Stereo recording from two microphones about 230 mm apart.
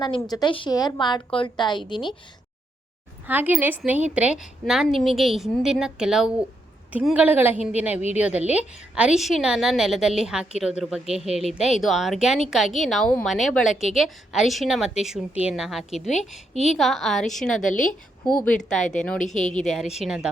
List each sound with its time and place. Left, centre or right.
0.0 s a woman's voice: centre
3.2 s a woman's voice: centre